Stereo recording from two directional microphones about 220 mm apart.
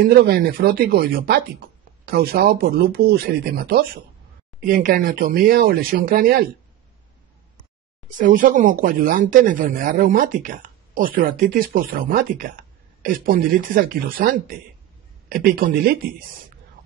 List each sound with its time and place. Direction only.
0.1 s speech: 45° right (ahead or behind)
8.2 s speech: 40° right (ahead or behind)